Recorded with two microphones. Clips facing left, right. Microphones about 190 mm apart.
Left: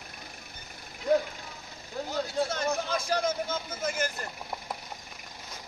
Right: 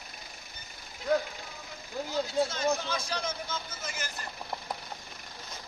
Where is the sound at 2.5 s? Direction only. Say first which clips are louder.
Even; 55° left (ahead or behind).